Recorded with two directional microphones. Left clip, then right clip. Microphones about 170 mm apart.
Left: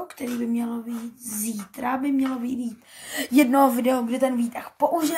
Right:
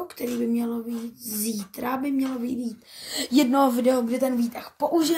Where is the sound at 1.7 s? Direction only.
50° right (ahead or behind).